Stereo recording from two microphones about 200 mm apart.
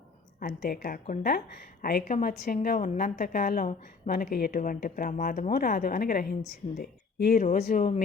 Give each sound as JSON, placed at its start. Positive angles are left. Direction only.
{"t": 0.3, "sound": "a woman's voice", "side_deg": 45}